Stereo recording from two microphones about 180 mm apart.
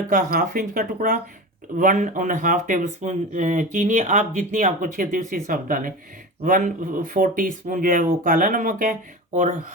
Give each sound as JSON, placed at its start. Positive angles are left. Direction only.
{"t": 0.1, "sound": "speech", "side_deg": -50}